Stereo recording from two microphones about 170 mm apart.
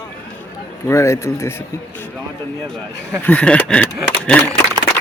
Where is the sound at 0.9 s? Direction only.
15° left (ahead or behind).